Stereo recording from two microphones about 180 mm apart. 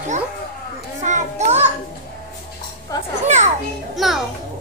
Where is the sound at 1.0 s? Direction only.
40° right (ahead or behind).